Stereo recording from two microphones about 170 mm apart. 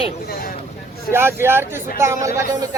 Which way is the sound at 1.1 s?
15° right (ahead or behind).